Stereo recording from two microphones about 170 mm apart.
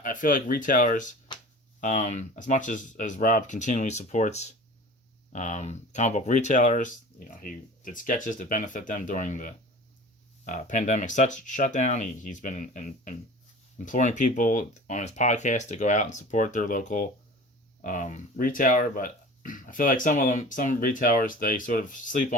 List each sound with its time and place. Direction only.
0.0 s speech: 50° left (ahead or behind)